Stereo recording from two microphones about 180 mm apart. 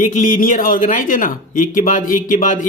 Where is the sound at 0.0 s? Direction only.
45° left (ahead or behind).